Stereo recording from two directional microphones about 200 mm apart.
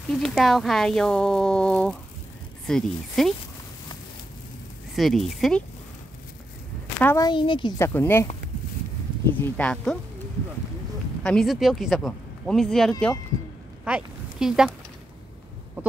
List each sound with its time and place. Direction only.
0.1 s speech: centre (ahead or behind)
4.9 s speech: centre (ahead or behind)
7.0 s speech: 10° left (ahead or behind)
7.2 s a woman's voice: 25° left (ahead or behind)
7.8 s speech: 10° left (ahead or behind)
9.4 s speech: 5° left (ahead or behind)
11.2 s speech: centre (ahead or behind)
15.8 s a sound: 10° right (ahead or behind)